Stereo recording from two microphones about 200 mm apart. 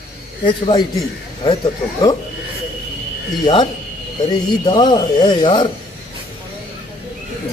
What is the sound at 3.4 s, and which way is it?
Speech, 20° left (ahead or behind).